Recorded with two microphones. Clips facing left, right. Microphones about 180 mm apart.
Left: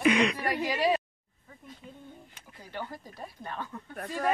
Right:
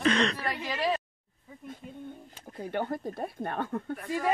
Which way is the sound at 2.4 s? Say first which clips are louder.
Right 8 dB; 50° right (ahead or behind).